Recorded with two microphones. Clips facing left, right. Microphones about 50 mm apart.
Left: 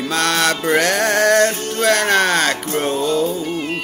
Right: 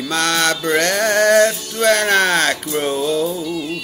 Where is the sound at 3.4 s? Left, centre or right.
Left.